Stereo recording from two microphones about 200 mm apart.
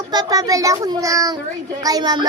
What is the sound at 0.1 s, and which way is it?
Speech, 20° right (ahead or behind).